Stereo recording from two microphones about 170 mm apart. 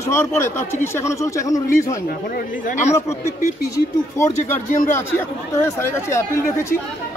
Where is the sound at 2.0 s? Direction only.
55° left (ahead or behind).